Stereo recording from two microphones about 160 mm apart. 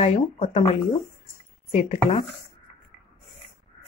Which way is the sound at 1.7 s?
40° left (ahead or behind).